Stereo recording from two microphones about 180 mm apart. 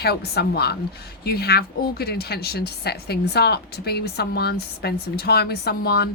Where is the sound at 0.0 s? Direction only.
65° left (ahead or behind).